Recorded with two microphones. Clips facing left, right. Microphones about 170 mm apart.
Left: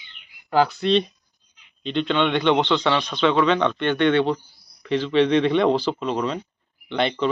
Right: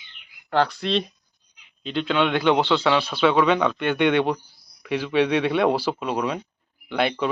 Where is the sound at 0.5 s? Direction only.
Centre (ahead or behind).